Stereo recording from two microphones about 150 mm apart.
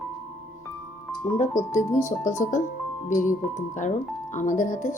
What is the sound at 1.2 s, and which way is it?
Speech, 55° left (ahead or behind).